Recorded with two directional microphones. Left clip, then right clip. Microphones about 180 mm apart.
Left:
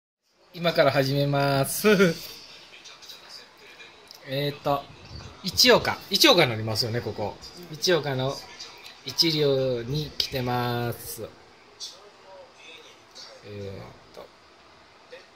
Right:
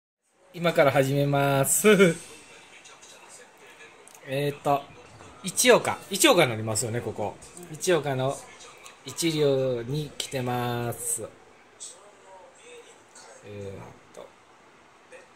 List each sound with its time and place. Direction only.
0.5 s speech: 20° right (ahead or behind)
4.3 s speech: 15° right (ahead or behind)